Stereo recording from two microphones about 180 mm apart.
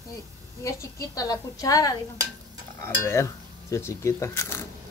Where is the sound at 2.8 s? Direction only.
15° left (ahead or behind).